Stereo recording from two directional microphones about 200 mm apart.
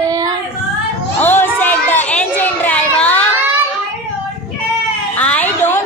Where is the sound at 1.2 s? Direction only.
10° left (ahead or behind).